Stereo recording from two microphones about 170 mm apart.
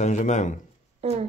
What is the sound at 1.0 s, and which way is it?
Speech, 35° right (ahead or behind).